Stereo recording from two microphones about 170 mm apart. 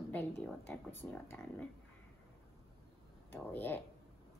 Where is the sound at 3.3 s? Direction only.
10° left (ahead or behind).